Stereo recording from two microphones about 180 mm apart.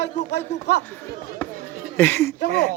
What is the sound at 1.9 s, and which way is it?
Speech, 15° left (ahead or behind).